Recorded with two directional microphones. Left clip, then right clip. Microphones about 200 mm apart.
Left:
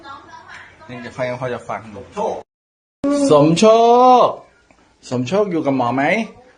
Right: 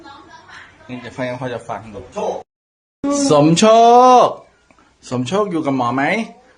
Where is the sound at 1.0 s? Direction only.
20° right (ahead or behind).